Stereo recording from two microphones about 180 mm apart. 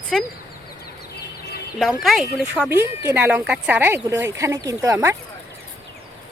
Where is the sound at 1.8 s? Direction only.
Centre (ahead or behind); by 5.1 s 15° right (ahead or behind).